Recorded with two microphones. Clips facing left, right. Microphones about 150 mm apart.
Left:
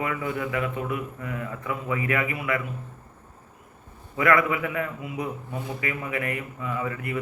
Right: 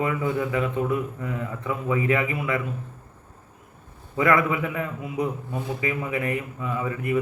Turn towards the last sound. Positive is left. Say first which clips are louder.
# right 3 dB
turn(degrees=-20)  # may be behind; listen again after turning